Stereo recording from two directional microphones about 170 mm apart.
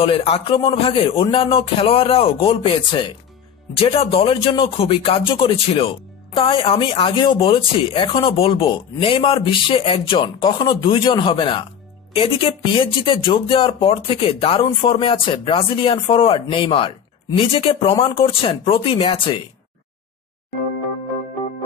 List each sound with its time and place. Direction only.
0.0 s speech: 35° left (ahead or behind)